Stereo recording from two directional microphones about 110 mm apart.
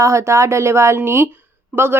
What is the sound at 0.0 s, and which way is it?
Speech, 25° right (ahead or behind).